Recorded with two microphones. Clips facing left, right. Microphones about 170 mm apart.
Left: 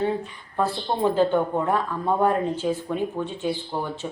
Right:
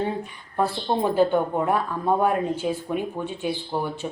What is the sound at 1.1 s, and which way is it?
Speech, 10° right (ahead or behind).